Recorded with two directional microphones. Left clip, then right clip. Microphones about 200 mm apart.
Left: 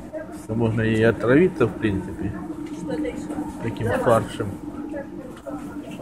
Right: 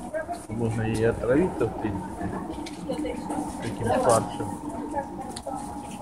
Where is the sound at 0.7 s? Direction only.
45° left (ahead or behind).